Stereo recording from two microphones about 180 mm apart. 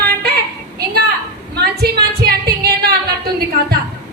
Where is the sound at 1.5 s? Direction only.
65° right (ahead or behind).